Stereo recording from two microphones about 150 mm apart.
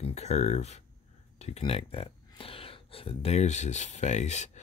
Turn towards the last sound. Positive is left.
turn(degrees=50)  # may be behind; listen again after turning